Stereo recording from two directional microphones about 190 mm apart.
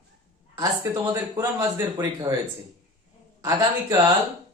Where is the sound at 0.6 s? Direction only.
20° right (ahead or behind).